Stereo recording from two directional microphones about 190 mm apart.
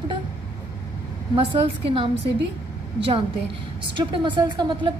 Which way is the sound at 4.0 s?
25° right (ahead or behind).